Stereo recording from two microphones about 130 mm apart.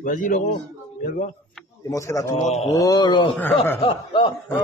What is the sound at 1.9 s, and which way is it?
A man's voice, 25° left (ahead or behind).